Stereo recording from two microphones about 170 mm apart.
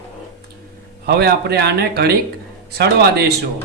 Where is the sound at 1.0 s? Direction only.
70° right (ahead or behind).